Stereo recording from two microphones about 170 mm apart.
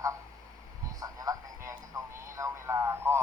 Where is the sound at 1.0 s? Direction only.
20° right (ahead or behind).